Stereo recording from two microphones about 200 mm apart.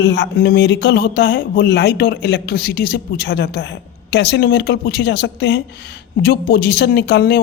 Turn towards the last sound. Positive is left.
turn(degrees=50)  # may be behind; listen again after turning